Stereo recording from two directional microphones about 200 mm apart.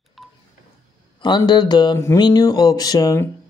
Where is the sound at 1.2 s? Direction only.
20° left (ahead or behind).